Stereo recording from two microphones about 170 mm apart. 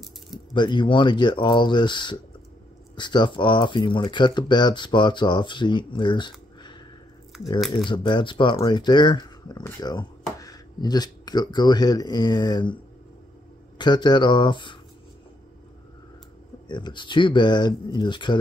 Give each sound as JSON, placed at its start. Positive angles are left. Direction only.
{"t": 0.3, "sound": "speech", "side_deg": 25}
{"t": 7.9, "sound": "speech", "side_deg": 30}
{"t": 13.7, "sound": "speech", "side_deg": 25}
{"t": 16.6, "sound": "speech", "side_deg": 25}